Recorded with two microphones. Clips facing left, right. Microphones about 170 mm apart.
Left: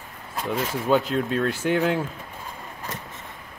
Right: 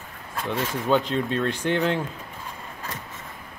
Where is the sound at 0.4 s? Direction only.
5° left (ahead or behind).